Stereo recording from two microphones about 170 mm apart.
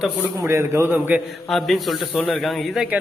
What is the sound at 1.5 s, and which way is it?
A man's voice, centre (ahead or behind).